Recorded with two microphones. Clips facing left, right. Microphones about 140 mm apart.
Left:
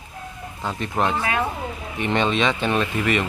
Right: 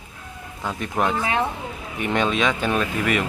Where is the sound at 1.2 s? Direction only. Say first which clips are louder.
Right 1 dB; 20° right (ahead or behind).